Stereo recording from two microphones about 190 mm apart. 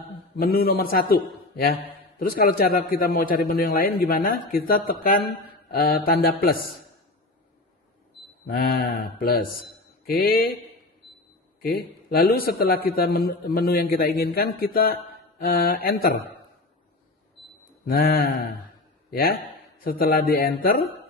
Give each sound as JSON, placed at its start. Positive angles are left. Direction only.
{"t": 0.4, "sound": "a man's voice", "side_deg": 50}
{"t": 8.5, "sound": "a man's voice", "side_deg": 50}
{"t": 11.7, "sound": "a man's voice", "side_deg": 55}
{"t": 17.8, "sound": "a man's voice", "side_deg": 50}